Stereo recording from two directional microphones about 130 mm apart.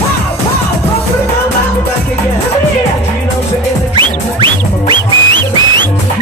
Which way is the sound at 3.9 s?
40° right (ahead or behind).